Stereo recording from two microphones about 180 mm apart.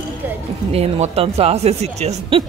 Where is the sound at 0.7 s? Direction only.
35° right (ahead or behind).